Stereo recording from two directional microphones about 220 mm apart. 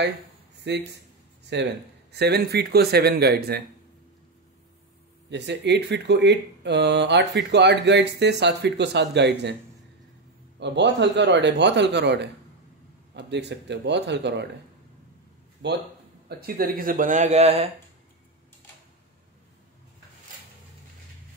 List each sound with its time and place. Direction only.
0.7 s speech: 50° right (ahead or behind)
5.3 s speech: 50° right (ahead or behind)
10.6 s speech: 50° right (ahead or behind)
15.6 s speech: 50° right (ahead or behind); by 17.6 s 30° right (ahead or behind)